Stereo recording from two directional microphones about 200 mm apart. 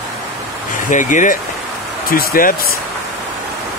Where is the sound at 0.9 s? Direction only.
40° left (ahead or behind).